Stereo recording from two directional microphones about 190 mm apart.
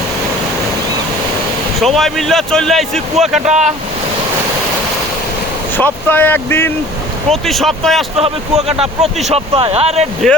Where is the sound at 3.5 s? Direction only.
35° right (ahead or behind).